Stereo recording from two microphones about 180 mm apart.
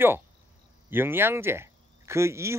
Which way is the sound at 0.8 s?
10° right (ahead or behind).